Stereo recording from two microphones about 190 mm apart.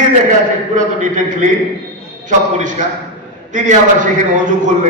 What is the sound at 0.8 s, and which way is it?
A man's voice, 40° right (ahead or behind).